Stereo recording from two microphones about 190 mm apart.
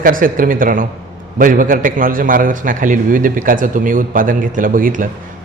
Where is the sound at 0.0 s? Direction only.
45° right (ahead or behind).